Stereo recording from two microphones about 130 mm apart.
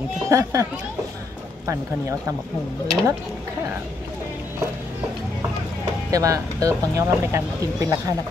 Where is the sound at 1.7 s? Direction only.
20° right (ahead or behind).